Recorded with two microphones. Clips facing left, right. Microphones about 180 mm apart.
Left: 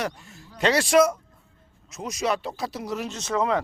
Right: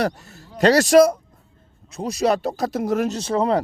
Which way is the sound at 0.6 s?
40° right (ahead or behind).